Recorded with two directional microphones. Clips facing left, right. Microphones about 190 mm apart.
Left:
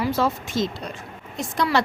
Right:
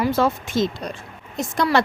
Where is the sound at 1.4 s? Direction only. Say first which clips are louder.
Right 3 dB; 45° right (ahead or behind).